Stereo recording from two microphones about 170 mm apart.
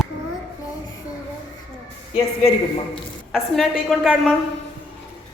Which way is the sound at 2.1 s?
35° left (ahead or behind).